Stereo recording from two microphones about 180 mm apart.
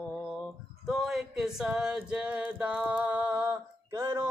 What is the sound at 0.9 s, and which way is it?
Male singing, centre (ahead or behind).